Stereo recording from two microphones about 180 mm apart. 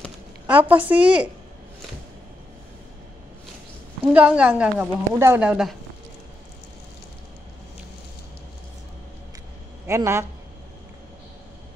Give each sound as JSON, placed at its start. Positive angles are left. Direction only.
{"t": 0.5, "sound": "a woman's voice", "side_deg": -10}
{"t": 4.0, "sound": "a woman's voice", "side_deg": -5}
{"t": 9.8, "sound": "a man's voice", "side_deg": -15}